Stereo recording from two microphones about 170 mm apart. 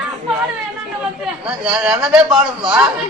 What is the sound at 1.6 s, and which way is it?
Speech, 5° right (ahead or behind).